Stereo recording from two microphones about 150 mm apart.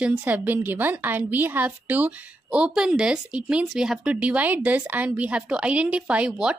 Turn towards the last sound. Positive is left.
turn(degrees=-5)  # may be behind; listen again after turning